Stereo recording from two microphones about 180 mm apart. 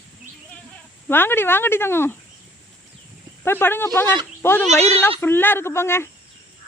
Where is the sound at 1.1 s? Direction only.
10° left (ahead or behind).